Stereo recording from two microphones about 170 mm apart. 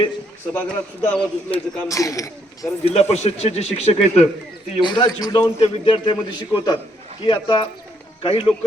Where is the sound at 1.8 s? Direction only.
20° left (ahead or behind).